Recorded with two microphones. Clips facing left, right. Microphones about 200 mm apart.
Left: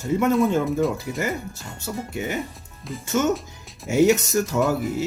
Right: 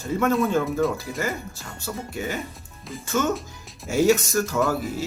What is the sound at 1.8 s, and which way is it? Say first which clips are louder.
Speech: left 2 dB; 20° left (ahead or behind).